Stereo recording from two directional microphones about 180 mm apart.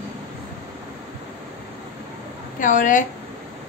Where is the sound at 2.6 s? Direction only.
45° left (ahead or behind).